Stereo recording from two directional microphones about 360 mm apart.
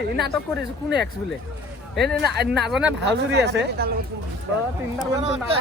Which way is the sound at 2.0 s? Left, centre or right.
Centre.